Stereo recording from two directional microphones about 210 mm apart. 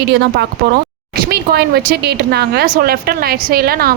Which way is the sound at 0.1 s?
55° right (ahead or behind).